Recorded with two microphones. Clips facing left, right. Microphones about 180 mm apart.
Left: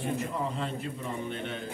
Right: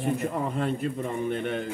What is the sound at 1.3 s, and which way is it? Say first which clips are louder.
Speech: right 7 dB; 55° right (ahead or behind).